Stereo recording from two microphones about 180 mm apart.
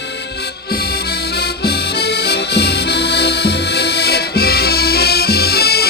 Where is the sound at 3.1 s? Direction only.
65° left (ahead or behind).